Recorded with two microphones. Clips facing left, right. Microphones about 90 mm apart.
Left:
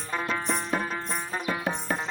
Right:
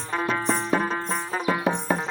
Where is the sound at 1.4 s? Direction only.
20° right (ahead or behind).